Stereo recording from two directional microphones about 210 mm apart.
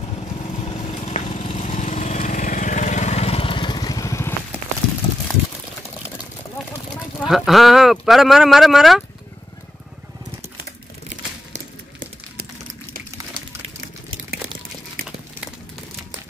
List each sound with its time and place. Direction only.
0.2 s vehicle: 30° left (ahead or behind)
7.2 s speech: centre (ahead or behind)